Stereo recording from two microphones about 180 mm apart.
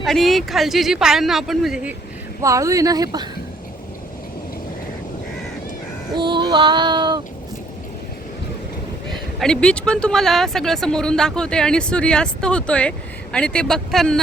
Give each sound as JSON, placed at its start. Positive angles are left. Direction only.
{"t": 0.0, "sound": "speech", "side_deg": 0}
{"t": 2.4, "sound": "female singing", "side_deg": -15}
{"t": 6.1, "sound": "female singing", "side_deg": -25}
{"t": 9.0, "sound": "speech", "side_deg": 0}